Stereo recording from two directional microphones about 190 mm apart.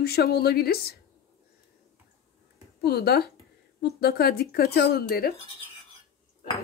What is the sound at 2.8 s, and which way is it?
Speech, 55° left (ahead or behind).